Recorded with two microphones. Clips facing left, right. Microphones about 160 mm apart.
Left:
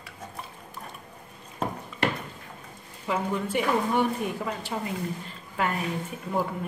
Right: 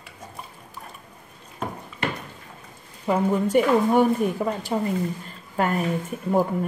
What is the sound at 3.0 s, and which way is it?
A woman's voice, 40° right (ahead or behind).